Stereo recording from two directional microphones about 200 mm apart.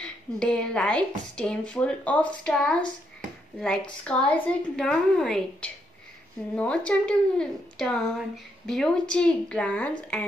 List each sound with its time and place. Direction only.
0.0 s speech: 5° left (ahead or behind)